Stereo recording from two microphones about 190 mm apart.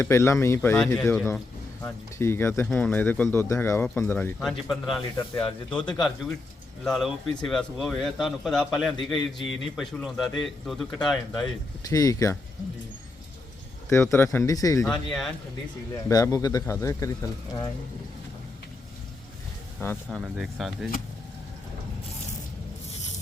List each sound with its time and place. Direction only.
0.0 s speech: 15° left (ahead or behind)
5.4 s speech: 30° left (ahead or behind)
6.8 s a man's voice: centre (ahead or behind)
11.9 s speech: 15° left (ahead or behind)
13.9 s speech: 10° left (ahead or behind)
14.8 s a man's voice: centre (ahead or behind)
16.0 s speech: 15° left (ahead or behind)
20.1 s a man's voice: centre (ahead or behind)